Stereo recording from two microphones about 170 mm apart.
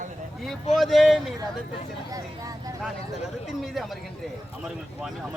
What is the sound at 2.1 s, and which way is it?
Speech, 20° right (ahead or behind).